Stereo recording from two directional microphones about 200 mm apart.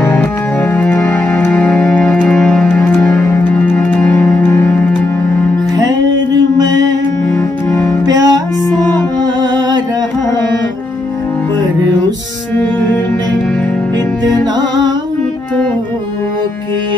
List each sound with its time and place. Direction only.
0.0 s music: 10° left (ahead or behind)
6.6 s music: 20° right (ahead or behind)
7.2 s music: 10° left (ahead or behind)
8.1 s music: 20° right (ahead or behind)